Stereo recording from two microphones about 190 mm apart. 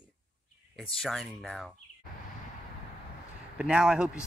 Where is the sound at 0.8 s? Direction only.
Centre (ahead or behind).